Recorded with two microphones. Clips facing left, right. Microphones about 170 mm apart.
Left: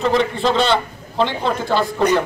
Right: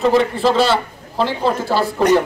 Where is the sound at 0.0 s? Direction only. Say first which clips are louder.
Right 3 dB; 5° right (ahead or behind).